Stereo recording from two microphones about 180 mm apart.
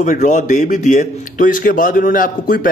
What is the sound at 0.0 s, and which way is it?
A man's voice, 45° left (ahead or behind).